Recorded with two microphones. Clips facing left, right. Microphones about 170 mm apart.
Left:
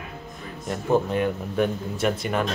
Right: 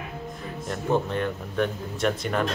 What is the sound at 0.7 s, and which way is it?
Speech, 10° left (ahead or behind).